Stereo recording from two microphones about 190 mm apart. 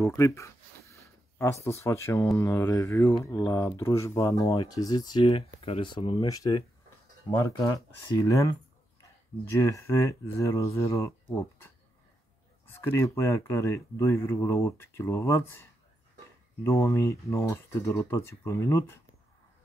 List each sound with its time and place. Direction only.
0.0 s a sound: 15° left (ahead or behind)
2.3 s speech: 15° left (ahead or behind)
12.6 s speech: 10° left (ahead or behind)